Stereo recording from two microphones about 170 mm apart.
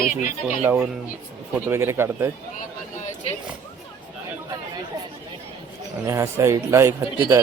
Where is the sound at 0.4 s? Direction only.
10° right (ahead or behind).